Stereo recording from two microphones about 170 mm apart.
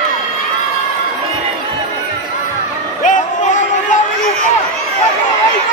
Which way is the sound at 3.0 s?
45° left (ahead or behind).